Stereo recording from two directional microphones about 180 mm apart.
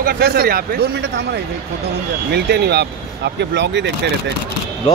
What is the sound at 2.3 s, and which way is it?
Speech, 65° right (ahead or behind).